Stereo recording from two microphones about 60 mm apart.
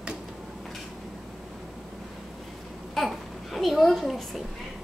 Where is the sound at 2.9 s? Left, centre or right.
Centre.